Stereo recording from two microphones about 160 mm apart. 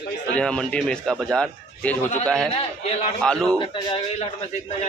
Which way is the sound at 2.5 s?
40° left (ahead or behind).